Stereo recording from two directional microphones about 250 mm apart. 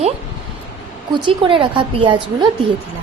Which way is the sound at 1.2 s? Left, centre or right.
Centre.